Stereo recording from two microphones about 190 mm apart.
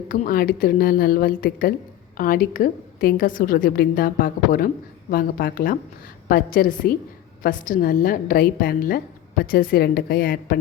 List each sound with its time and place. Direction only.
0.1 s a woman's voice: 45° left (ahead or behind)